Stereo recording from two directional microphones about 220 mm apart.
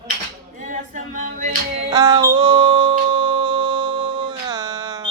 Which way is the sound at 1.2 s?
35° right (ahead or behind).